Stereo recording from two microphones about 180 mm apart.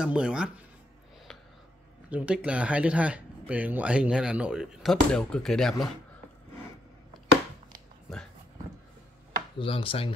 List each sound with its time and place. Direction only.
0.0 s speech: 5° right (ahead or behind)
2.0 s speech: 5° right (ahead or behind)
8.1 s speech: 5° left (ahead or behind)
9.6 s speech: 30° left (ahead or behind)